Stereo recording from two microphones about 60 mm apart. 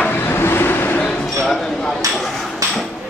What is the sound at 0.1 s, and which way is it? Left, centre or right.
Vehicle, left.